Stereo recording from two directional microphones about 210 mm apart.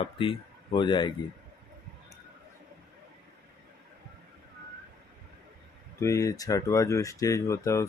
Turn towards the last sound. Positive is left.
turn(degrees=15)  # may be behind; listen again after turning